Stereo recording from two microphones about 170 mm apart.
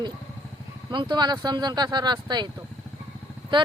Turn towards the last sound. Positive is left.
turn(degrees=-30)  # may be behind; listen again after turning